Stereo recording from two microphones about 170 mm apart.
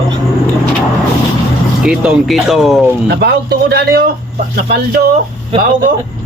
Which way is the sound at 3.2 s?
70° right (ahead or behind).